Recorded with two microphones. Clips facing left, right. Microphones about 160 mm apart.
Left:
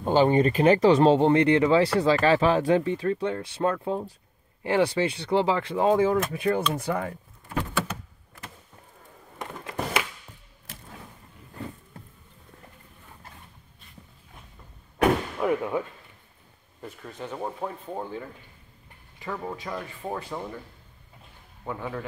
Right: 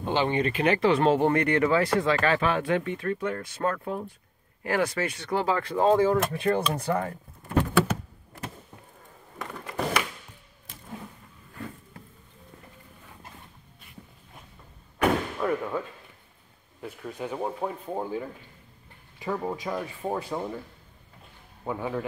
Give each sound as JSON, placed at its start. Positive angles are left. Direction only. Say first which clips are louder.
{"t": 0.0, "sound": "speech", "louder": "left 5 dB", "side_deg": 40}
{"t": 9.4, "sound": "a sound", "louder": "right 1 dB", "side_deg": 20}
{"t": 15.4, "sound": "speech", "louder": "left 4 dB", "side_deg": 15}
{"t": 16.8, "sound": "speech", "louder": "right 3 dB", "side_deg": -10}
{"t": 21.6, "sound": "speech", "louder": "right 3 dB", "side_deg": -10}